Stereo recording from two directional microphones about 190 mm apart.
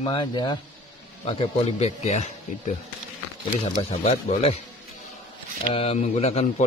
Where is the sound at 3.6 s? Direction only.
35° left (ahead or behind).